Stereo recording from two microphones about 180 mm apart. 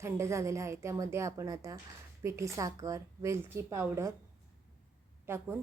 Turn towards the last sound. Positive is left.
turn(degrees=-10)  # may be behind; listen again after turning